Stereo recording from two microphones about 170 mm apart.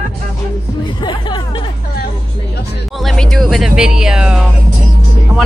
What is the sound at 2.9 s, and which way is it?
Speech, 5° left (ahead or behind).